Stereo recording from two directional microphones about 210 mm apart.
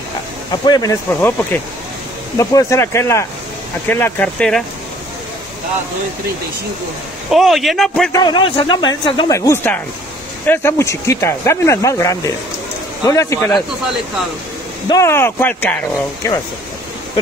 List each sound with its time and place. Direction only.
0.5 s speech: 20° left (ahead or behind); by 4.6 s 5° left (ahead or behind)
7.2 s a man's voice: centre (ahead or behind)
8.1 s speech: 20° left (ahead or behind)
14.9 s speech: 15° left (ahead or behind)